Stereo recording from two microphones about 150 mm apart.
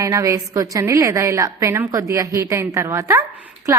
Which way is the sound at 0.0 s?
20° right (ahead or behind).